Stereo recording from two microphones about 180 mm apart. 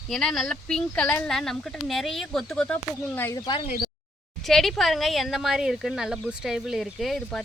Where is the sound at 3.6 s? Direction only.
50° left (ahead or behind).